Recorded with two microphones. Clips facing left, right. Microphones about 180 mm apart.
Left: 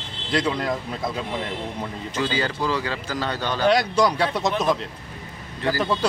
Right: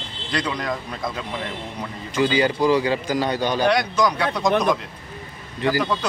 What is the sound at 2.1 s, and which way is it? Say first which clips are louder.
Speech: right 6 dB; 15° right (ahead or behind).